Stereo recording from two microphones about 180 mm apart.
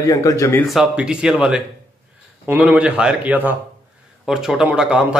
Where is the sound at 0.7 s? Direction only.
5° right (ahead or behind).